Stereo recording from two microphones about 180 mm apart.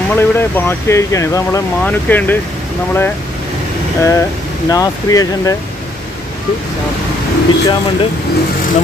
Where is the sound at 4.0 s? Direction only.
15° left (ahead or behind).